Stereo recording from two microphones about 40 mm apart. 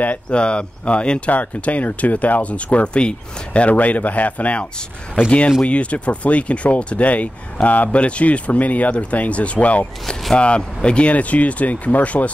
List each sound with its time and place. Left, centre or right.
0.3 s speech: left
1.3 s speech: left